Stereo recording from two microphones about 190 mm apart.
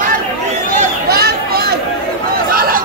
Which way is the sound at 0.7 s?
55° right (ahead or behind).